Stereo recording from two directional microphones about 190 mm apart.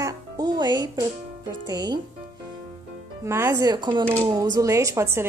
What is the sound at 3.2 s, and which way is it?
A woman's voice, 15° right (ahead or behind).